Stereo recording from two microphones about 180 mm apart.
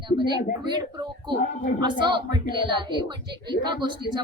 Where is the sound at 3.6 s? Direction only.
25° right (ahead or behind).